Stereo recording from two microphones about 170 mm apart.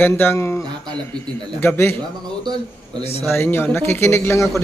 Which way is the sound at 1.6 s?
15° left (ahead or behind).